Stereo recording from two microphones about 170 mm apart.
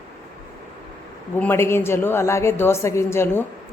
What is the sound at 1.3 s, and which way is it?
A woman's voice, 10° left (ahead or behind).